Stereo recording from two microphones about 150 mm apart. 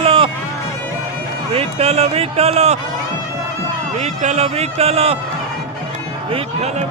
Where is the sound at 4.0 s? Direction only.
50° right (ahead or behind).